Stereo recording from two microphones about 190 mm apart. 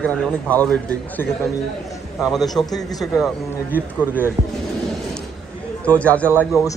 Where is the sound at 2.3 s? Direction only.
Centre (ahead or behind).